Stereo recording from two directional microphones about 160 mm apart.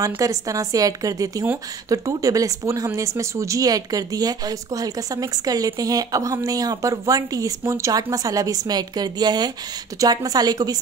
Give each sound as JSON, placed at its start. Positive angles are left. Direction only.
{"t": 0.0, "sound": "a woman's voice", "side_deg": -20}